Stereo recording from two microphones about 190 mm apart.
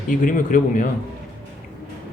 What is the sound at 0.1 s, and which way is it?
Speech, 40° left (ahead or behind).